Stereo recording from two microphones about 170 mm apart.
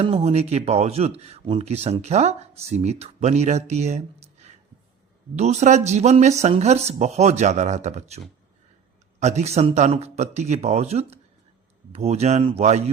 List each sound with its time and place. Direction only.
0.0 s speech: 35° right (ahead or behind)
9.2 s speech: 40° right (ahead or behind)